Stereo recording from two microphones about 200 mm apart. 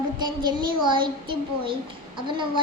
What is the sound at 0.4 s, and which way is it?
A child's voice, 20° right (ahead or behind).